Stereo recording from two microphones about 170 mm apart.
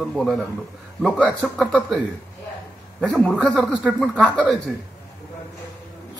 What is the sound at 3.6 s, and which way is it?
Speech, 10° right (ahead or behind).